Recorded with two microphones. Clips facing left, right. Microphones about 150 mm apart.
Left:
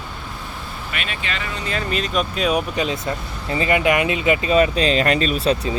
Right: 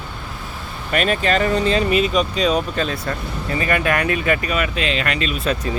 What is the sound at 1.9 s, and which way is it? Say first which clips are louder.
Speech: right 4 dB; centre (ahead or behind).